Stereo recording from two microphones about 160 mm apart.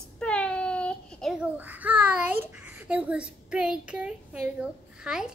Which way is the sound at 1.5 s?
10° right (ahead or behind).